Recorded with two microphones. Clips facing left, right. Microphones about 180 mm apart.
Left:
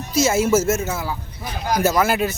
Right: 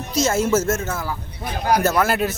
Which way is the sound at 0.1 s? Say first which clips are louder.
Left 2 dB; 5° left (ahead or behind).